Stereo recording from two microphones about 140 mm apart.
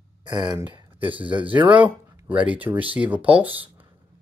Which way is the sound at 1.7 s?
10° right (ahead or behind).